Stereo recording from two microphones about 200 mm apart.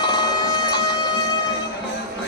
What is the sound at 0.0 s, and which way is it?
Music, 20° left (ahead or behind).